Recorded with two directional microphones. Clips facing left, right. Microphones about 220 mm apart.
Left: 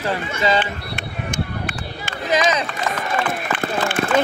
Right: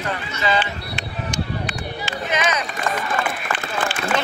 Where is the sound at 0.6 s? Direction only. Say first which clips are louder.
Left 1 dB; 55° left (ahead or behind).